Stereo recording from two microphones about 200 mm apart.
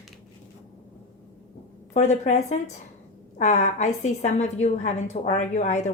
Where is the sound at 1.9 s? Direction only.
35° left (ahead or behind).